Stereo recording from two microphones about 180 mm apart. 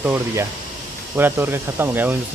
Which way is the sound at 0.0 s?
10° right (ahead or behind).